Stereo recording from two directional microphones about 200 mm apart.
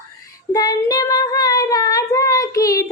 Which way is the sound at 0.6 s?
20° left (ahead or behind).